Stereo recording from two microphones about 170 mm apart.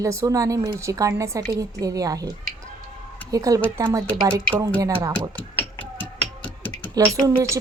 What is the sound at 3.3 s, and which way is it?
A woman's voice, 20° right (ahead or behind).